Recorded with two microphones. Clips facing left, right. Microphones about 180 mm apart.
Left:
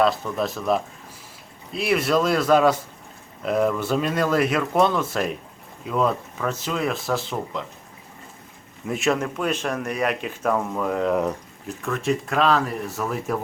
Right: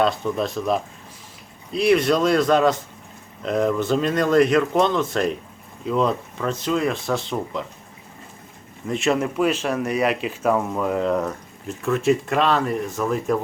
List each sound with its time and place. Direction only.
0.0 s speech: centre (ahead or behind)
8.9 s speech: centre (ahead or behind)